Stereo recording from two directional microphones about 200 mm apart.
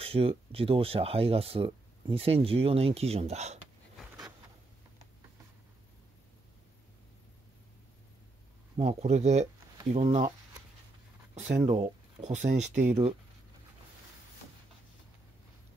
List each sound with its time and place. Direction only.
0.0 s speech: 30° right (ahead or behind)
8.8 s speech: 35° right (ahead or behind)
11.3 s speech: 35° right (ahead or behind)